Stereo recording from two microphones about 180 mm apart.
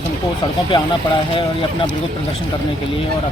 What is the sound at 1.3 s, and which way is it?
Speech, 30° left (ahead or behind).